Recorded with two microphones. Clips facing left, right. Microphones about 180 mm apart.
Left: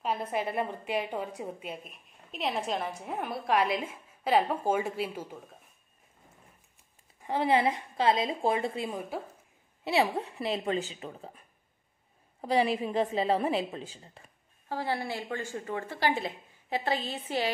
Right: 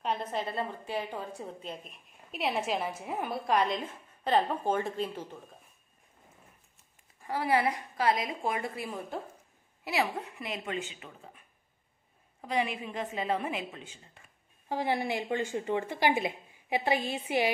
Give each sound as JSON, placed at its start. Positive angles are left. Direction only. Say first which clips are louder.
{"t": 0.0, "sound": "a woman's voice", "louder": "left 2 dB", "side_deg": 5}
{"t": 2.3, "sound": "a woman's voice", "louder": "right 1 dB", "side_deg": -5}
{"t": 7.2, "sound": "a woman's voice", "louder": "left 2 dB", "side_deg": 25}
{"t": 9.1, "sound": "a woman's voice", "louder": "left 1 dB", "side_deg": 5}
{"t": 9.8, "sound": "a woman's voice", "louder": "left 4 dB", "side_deg": 30}
{"t": 14.7, "sound": "a woman's voice", "louder": "right 2 dB", "side_deg": -20}